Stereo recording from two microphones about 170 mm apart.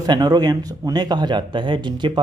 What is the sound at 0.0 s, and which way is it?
Speech, 25° right (ahead or behind).